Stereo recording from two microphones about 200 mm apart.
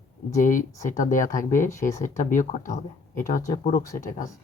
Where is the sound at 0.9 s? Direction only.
40° left (ahead or behind).